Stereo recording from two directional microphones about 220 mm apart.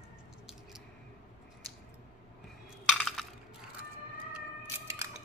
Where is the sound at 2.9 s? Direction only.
Centre (ahead or behind).